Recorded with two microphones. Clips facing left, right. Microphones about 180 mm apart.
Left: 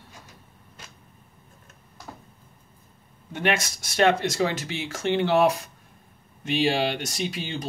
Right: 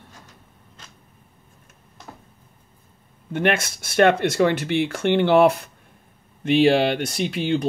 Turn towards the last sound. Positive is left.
turn(degrees=-55)  # may be behind; listen again after turning